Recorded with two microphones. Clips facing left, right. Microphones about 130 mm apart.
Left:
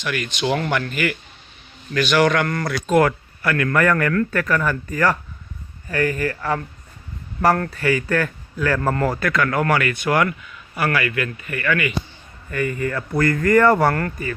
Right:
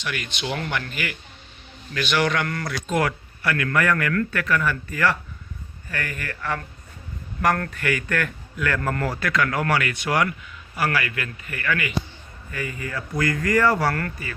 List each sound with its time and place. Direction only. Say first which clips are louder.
0.0 s speech: left 6 dB; 50° left (ahead or behind)
7.7 s speech: left 5 dB; 35° left (ahead or behind); by 10.3 s 55° left (ahead or behind)
10.8 s a man's voice: left 3 dB; 65° left (ahead or behind)
12.5 s speech: left 8 dB; 55° left (ahead or behind)